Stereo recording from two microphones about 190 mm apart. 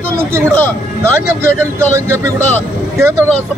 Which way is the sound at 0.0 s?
15° right (ahead or behind).